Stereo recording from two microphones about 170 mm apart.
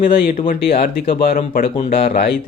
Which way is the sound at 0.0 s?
55° left (ahead or behind).